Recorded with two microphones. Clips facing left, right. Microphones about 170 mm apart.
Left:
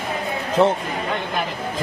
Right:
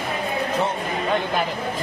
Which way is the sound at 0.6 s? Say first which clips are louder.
Left 10 dB; 90° left.